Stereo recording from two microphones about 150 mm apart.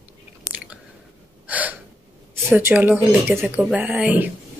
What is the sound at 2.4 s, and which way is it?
Speech, 15° right (ahead or behind).